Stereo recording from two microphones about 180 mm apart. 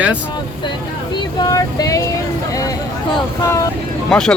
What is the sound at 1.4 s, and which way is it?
Speech, 20° left (ahead or behind).